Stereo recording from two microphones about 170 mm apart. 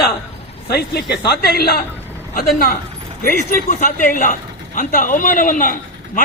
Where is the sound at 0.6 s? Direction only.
75° left (ahead or behind).